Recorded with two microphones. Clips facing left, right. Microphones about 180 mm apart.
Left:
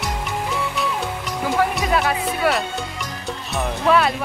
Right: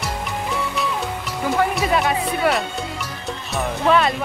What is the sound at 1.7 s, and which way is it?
Music, centre (ahead or behind).